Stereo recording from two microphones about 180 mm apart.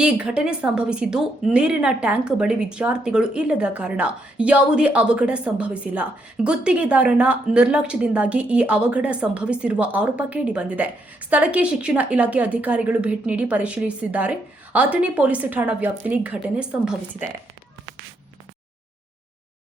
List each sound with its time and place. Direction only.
0.0 s a woman's voice: 5° right (ahead or behind)